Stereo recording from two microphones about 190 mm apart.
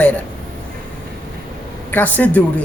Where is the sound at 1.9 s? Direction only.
10° left (ahead or behind).